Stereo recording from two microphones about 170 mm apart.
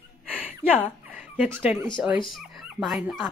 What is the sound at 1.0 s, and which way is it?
Dog, 10° right (ahead or behind).